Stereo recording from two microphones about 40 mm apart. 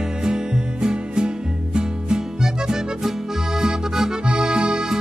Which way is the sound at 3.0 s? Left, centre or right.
Centre.